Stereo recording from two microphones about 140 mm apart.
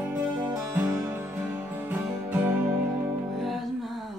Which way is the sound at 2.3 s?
10° right (ahead or behind).